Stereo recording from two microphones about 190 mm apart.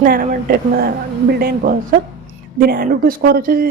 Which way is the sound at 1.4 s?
50° right (ahead or behind).